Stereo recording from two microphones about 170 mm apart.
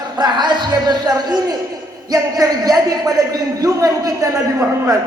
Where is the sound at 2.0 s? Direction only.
20° right (ahead or behind).